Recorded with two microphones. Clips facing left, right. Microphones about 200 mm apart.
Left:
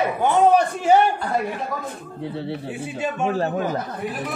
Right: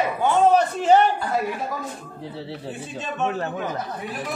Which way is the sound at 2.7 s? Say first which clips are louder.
Left 5 dB; 10° left (ahead or behind).